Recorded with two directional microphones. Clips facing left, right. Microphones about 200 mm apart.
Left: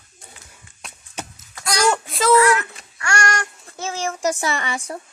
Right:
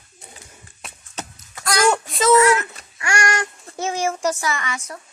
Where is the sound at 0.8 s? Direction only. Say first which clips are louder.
Even; 5° right (ahead or behind).